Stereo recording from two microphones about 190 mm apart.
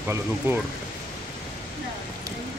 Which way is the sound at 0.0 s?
10° right (ahead or behind).